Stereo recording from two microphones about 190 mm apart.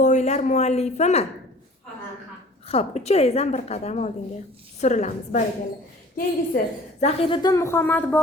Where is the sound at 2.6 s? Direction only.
30° left (ahead or behind).